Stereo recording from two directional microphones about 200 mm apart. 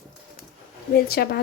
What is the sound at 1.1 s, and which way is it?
Speech, 50° left (ahead or behind).